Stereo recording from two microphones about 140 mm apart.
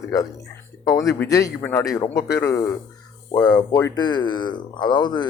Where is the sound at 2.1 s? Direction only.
25° left (ahead or behind).